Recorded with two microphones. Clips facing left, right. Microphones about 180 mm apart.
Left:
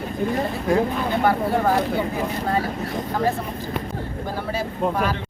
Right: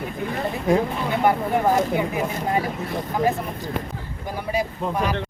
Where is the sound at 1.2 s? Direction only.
20° right (ahead or behind).